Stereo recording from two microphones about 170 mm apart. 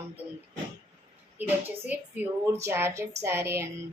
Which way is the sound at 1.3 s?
10° right (ahead or behind).